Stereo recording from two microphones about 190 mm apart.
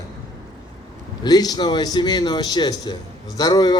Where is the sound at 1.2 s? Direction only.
20° left (ahead or behind).